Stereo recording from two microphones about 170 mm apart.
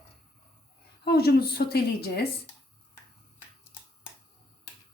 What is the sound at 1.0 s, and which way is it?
A woman's voice, 70° left (ahead or behind).